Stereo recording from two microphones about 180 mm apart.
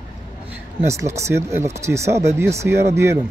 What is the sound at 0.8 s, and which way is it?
A man's voice, 15° right (ahead or behind).